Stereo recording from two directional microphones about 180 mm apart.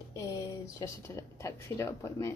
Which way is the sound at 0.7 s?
15° left (ahead or behind).